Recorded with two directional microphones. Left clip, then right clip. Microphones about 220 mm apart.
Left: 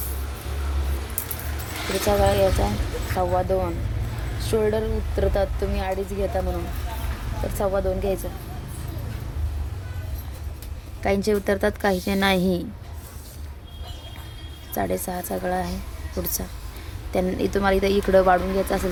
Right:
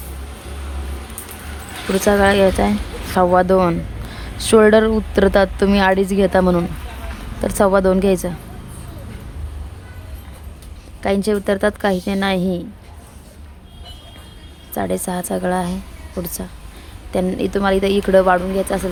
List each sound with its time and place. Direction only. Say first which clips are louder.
2.1 s speech: right 6 dB; 40° right (ahead or behind)
7.6 s speech: right 10 dB; 40° right (ahead or behind)
11.0 s a woman's voice: right 4 dB; 20° right (ahead or behind)
14.7 s a woman's voice: right 4 dB; 20° right (ahead or behind)